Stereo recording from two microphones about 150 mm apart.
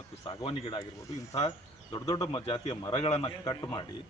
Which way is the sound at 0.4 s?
35° left (ahead or behind).